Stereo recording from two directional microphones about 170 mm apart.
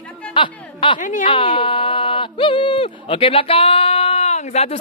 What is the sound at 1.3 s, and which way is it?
Speech, 30° left (ahead or behind).